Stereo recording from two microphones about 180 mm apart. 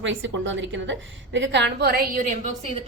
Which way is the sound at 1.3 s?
80° right.